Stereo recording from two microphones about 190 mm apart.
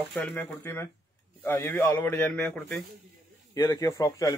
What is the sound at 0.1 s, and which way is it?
A man's voice, 5° left (ahead or behind).